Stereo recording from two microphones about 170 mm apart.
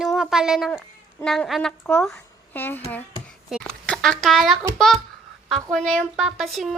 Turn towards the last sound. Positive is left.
turn(degrees=0)  # may be behind; listen again after turning